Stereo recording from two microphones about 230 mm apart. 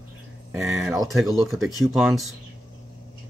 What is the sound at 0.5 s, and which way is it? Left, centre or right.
Speech, centre.